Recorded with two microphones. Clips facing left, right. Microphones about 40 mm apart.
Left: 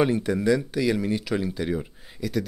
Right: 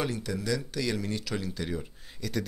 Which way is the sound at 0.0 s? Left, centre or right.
Left.